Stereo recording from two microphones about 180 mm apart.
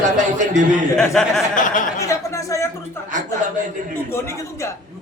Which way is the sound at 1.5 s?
45° left (ahead or behind).